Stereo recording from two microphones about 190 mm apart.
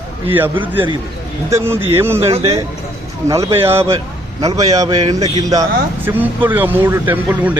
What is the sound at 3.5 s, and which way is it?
Speech, 15° right (ahead or behind).